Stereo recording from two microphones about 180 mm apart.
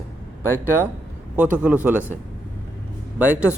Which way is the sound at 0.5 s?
10° right (ahead or behind).